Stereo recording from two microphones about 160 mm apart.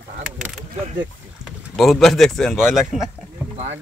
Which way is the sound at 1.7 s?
Centre (ahead or behind).